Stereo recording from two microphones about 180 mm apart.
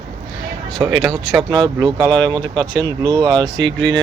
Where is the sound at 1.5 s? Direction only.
25° right (ahead or behind).